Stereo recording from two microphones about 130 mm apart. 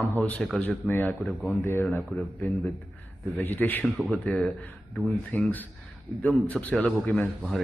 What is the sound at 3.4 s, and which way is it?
A man's voice, 15° left (ahead or behind).